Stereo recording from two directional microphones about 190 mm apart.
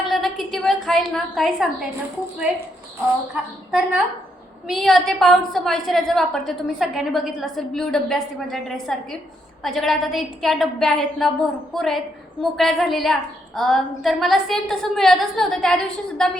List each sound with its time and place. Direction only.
0.0 s a woman's voice: centre (ahead or behind)
3.7 s a woman's voice: 5° right (ahead or behind)